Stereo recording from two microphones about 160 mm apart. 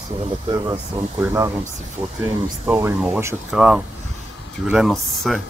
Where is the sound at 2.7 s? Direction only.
10° right (ahead or behind).